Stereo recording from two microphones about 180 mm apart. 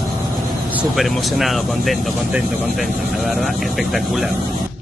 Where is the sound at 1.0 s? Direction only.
Centre (ahead or behind).